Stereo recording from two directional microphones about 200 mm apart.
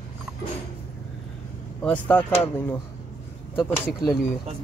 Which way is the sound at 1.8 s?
10° left (ahead or behind).